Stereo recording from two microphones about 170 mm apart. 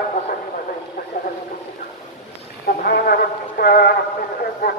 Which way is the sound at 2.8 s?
60° left (ahead or behind).